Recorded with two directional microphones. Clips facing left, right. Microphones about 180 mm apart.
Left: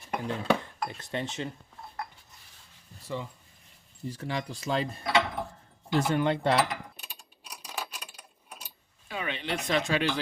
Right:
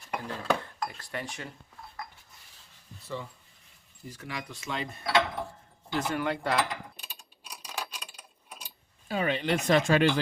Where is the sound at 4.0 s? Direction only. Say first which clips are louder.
Left 6 dB; 30° left (ahead or behind).